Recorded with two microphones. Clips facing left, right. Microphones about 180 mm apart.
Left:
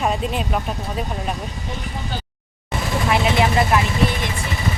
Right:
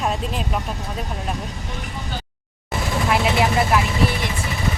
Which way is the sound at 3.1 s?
Centre (ahead or behind).